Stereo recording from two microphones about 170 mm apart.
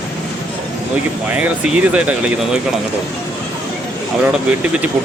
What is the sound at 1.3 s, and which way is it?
Speech, 10° right (ahead or behind).